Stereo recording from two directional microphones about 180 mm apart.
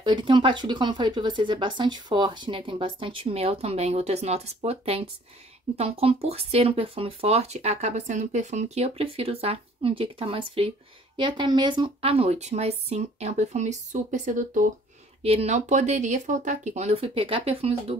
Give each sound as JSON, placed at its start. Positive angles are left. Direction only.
{"t": 0.0, "sound": "speech", "side_deg": -25}